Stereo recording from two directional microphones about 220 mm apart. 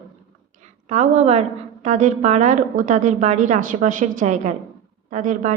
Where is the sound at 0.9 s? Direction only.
30° right (ahead or behind).